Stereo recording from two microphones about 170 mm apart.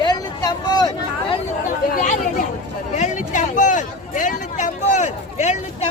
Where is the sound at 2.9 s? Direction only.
45° left (ahead or behind).